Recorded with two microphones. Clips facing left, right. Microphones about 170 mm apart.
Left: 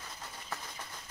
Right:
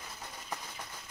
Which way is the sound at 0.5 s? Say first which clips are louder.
Right 1 dB; 15° right (ahead or behind).